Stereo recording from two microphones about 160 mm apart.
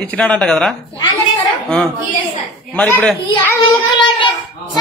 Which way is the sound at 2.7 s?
10° left (ahead or behind).